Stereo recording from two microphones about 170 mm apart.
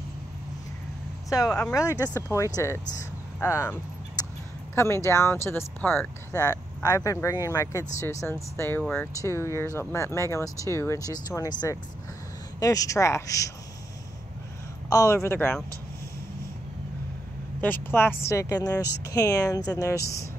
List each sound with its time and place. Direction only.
1.5 s speech: 5° left (ahead or behind)
1.8 s speech: 20° left (ahead or behind)
4.7 s speech: 15° left (ahead or behind)
12.5 s speech: 20° left (ahead or behind)
14.9 s speech: 20° left (ahead or behind)
17.8 s speech: 15° left (ahead or behind)